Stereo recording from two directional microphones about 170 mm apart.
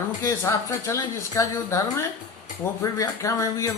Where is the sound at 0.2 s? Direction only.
15° left (ahead or behind).